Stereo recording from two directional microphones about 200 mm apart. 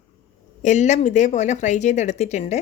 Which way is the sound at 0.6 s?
35° left (ahead or behind).